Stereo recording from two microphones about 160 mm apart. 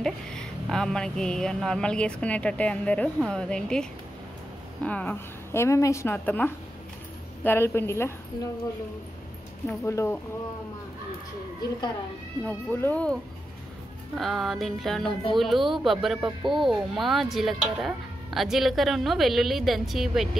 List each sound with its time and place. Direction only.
0.0 s speech: 5° left (ahead or behind)
4.8 s a woman's voice: 10° left (ahead or behind)
9.8 s a woman's voice: 15° left (ahead or behind)
12.4 s a woman's voice: 10° left (ahead or behind)